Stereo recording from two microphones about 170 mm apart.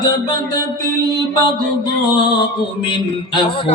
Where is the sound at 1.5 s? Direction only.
30° left (ahead or behind).